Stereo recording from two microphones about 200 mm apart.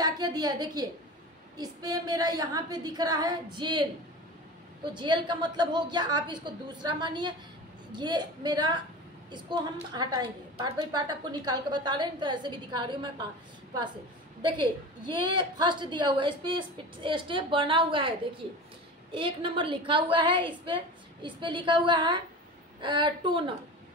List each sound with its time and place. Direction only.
0.0 s a woman's voice: 20° right (ahead or behind)
4.9 s a woman's voice: 20° right (ahead or behind)
14.4 s a woman's voice: 25° right (ahead or behind)
19.1 s a woman's voice: 25° right (ahead or behind)